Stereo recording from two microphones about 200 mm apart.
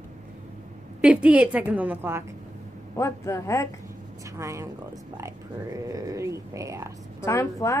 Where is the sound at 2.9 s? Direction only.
15° left (ahead or behind).